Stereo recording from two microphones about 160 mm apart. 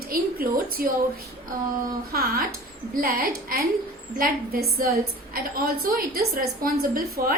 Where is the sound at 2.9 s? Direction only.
65° right (ahead or behind).